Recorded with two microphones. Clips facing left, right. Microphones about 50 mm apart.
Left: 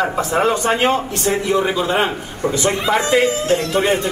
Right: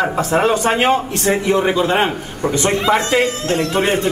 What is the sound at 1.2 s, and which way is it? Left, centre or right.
A man's voice, right.